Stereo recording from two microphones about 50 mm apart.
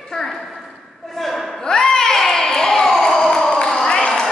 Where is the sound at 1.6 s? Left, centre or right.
Centre.